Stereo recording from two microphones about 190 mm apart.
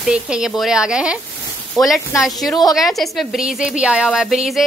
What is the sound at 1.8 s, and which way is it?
Speech, 20° left (ahead or behind).